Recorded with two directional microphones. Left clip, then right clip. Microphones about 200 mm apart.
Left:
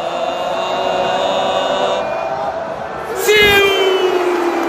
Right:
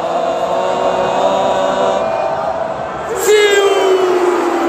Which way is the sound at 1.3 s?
25° right (ahead or behind).